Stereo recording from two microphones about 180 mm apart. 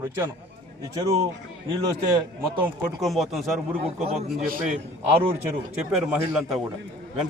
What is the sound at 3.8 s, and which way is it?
Speech, 35° right (ahead or behind).